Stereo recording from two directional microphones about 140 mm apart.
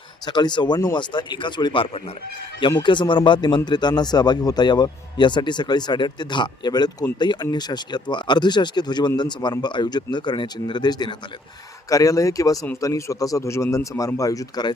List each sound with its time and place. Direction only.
0.3 s a man's voice: 30° left (ahead or behind)